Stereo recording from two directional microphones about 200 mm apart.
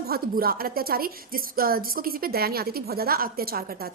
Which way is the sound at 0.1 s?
50° right (ahead or behind).